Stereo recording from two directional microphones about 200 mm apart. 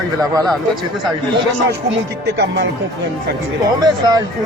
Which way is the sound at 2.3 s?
60° right (ahead or behind).